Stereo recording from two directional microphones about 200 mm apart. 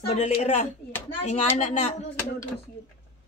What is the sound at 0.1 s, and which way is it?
Speech, 35° left (ahead or behind).